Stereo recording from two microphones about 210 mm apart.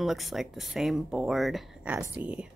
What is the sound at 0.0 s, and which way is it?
Speech, centre (ahead or behind).